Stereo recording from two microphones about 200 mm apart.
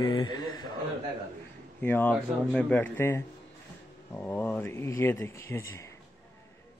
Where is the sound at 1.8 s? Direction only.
10° left (ahead or behind).